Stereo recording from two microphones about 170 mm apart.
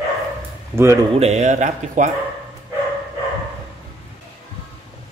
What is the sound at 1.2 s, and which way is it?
Speech, 40° right (ahead or behind).